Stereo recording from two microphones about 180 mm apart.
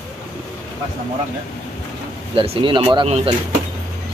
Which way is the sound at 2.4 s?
30° right (ahead or behind).